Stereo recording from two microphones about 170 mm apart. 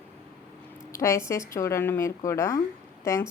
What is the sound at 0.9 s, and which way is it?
A woman's voice, 20° left (ahead or behind).